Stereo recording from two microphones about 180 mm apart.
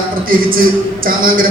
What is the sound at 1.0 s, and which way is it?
Speech, 50° right (ahead or behind).